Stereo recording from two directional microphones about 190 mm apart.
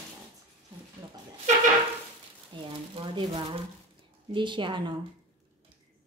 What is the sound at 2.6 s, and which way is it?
A woman's voice, 25° right (ahead or behind).